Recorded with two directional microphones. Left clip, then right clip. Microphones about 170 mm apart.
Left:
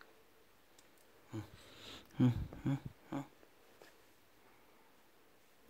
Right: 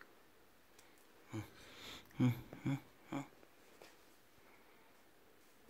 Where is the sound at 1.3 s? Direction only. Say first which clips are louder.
Even; 10° left (ahead or behind).